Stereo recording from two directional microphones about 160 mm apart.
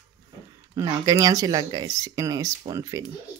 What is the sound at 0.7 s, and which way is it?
Speech, 25° right (ahead or behind).